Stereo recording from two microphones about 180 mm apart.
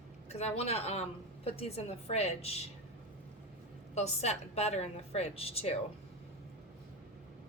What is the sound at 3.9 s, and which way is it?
A woman's voice, 35° left (ahead or behind).